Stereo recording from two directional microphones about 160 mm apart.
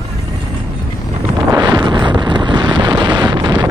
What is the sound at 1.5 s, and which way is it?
Wind noise, 30° right (ahead or behind).